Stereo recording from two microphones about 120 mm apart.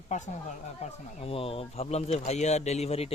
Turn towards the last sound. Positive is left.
turn(degrees=60)  # may be behind; listen again after turning